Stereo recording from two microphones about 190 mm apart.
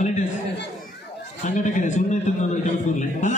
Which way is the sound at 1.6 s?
40° left (ahead or behind).